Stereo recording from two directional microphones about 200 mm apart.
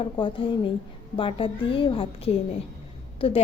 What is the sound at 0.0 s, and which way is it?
A woman's voice, 25° left (ahead or behind).